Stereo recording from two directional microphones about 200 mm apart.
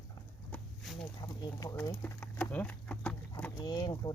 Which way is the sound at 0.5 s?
Centre (ahead or behind).